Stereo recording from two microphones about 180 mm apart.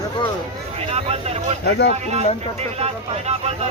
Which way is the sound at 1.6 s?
70° left (ahead or behind).